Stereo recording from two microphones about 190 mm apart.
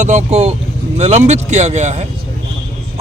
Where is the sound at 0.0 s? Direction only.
40° right (ahead or behind).